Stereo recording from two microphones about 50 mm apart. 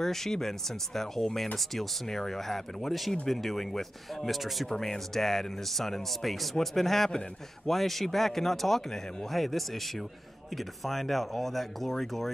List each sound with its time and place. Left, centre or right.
0.0 s speech: centre